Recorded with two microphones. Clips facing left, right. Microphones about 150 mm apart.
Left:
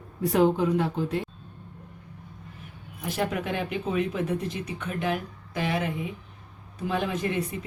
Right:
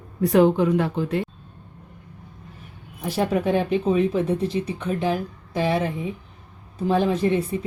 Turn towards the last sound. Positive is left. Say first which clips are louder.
# right 7 dB
turn(degrees=-35)  # may be behind; listen again after turning